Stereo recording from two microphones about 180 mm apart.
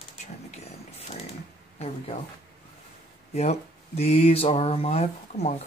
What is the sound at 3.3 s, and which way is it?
Speech, 35° left (ahead or behind).